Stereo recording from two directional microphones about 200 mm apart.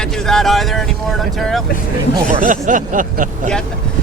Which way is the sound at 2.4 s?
40° right (ahead or behind).